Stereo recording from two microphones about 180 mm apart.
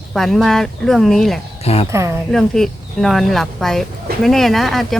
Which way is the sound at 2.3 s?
Centre (ahead or behind).